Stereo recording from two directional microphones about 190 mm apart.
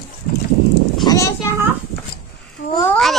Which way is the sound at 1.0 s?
15° left (ahead or behind).